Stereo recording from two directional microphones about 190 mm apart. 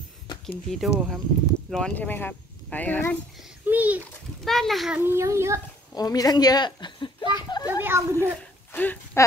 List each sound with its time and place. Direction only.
0.7 s speech: centre (ahead or behind)
3.6 s a child's voice: 10° right (ahead or behind)
5.9 s speech: 20° left (ahead or behind)
7.8 s a child's voice: 10° right (ahead or behind)
8.7 s speech: 10° left (ahead or behind)